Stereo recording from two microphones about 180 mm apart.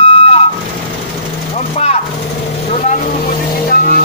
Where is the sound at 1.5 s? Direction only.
35° left (ahead or behind).